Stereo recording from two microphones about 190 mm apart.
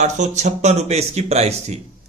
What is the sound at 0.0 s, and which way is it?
A man's voice, 35° right (ahead or behind).